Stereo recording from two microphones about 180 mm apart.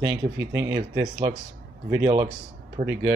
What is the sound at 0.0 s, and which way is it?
Speech, 20° right (ahead or behind).